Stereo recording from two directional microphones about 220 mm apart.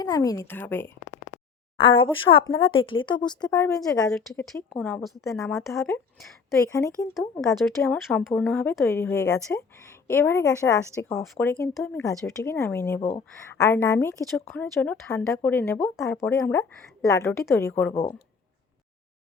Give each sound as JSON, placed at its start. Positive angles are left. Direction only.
{"t": 0.0, "sound": "speech", "side_deg": 15}
{"t": 1.8, "sound": "a woman's voice", "side_deg": 25}
{"t": 4.7, "sound": "a woman's voice", "side_deg": 5}
{"t": 7.1, "sound": "speech", "side_deg": 0}